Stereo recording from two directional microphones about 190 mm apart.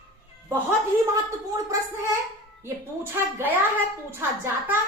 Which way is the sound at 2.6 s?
15° right (ahead or behind).